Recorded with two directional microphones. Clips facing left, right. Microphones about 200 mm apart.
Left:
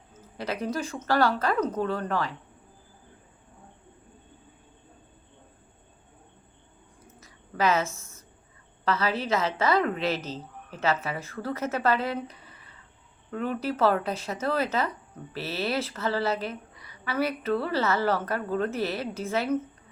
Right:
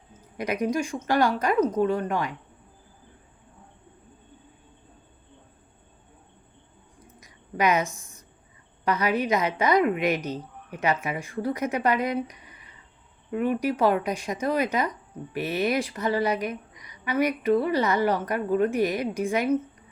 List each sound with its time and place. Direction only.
0.1 s speech: 15° right (ahead or behind)
7.2 s a sound: 15° right (ahead or behind)
8.8 s speech: 15° right (ahead or behind)